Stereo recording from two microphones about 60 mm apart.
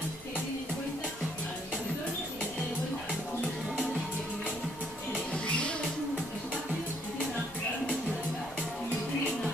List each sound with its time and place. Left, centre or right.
5.3 s music: centre